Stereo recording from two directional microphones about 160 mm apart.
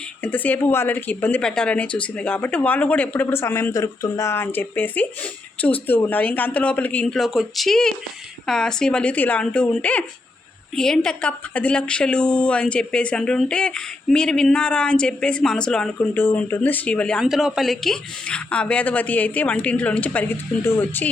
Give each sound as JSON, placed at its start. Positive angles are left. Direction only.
{"t": 0.2, "sound": "a woman's voice", "side_deg": 10}